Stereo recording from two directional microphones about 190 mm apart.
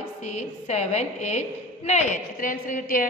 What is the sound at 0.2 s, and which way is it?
A woman's voice, 35° left (ahead or behind).